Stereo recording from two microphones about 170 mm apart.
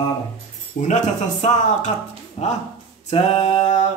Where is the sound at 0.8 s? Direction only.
45° left (ahead or behind).